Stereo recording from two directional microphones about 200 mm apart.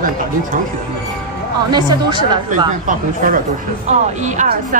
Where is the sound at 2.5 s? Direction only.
40° right (ahead or behind).